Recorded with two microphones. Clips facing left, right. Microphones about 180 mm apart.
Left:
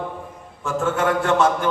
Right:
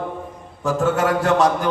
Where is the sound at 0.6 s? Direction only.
35° right (ahead or behind).